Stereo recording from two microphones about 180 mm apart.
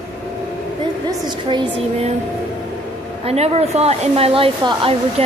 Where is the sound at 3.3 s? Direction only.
35° right (ahead or behind).